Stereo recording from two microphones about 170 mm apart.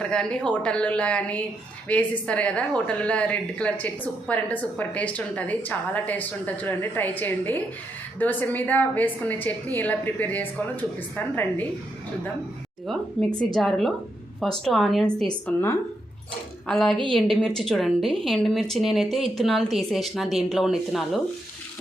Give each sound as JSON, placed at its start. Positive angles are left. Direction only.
{"t": 0.0, "sound": "a woman's voice", "side_deg": 5}
{"t": 12.9, "sound": "a woman's voice", "side_deg": 0}
{"t": 16.6, "sound": "a woman's voice", "side_deg": 5}
{"t": 16.9, "sound": "a woman's voice", "side_deg": -30}
{"t": 17.2, "sound": "a woman's voice", "side_deg": 0}